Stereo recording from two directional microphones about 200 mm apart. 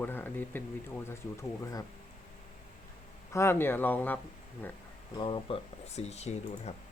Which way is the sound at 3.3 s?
10° left (ahead or behind).